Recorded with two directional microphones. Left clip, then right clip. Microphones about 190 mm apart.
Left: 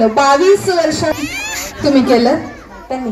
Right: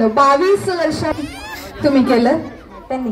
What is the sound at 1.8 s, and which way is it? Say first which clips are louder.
Speech: left 2 dB; 10° right (ahead or behind).